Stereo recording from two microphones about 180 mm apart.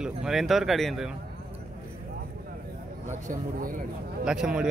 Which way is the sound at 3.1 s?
50° right (ahead or behind).